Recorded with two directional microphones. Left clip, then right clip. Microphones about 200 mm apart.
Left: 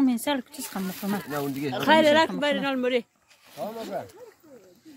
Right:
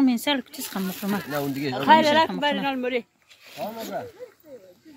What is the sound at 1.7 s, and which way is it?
Speech, 45° left (ahead or behind).